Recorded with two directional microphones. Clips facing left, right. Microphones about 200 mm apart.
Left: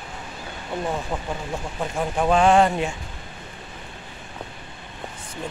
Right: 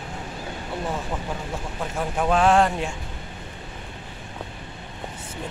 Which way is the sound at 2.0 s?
Centre (ahead or behind).